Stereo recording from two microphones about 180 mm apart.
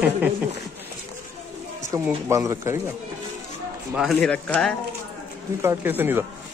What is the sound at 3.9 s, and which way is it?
Speech, centre (ahead or behind).